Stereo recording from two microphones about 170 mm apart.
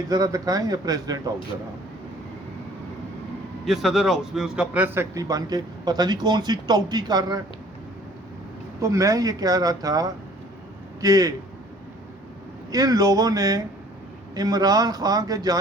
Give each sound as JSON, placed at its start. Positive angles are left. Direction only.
{"t": 0.1, "sound": "a man's voice", "side_deg": -20}
{"t": 3.7, "sound": "a man's voice", "side_deg": 0}
{"t": 8.8, "sound": "a man's voice", "side_deg": -20}
{"t": 12.7, "sound": "a man's voice", "side_deg": -20}